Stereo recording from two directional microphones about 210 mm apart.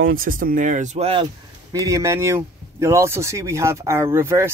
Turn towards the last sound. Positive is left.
turn(degrees=-10)  # may be behind; listen again after turning